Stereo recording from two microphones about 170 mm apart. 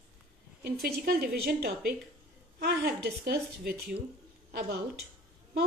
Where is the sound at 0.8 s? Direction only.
70° right (ahead or behind).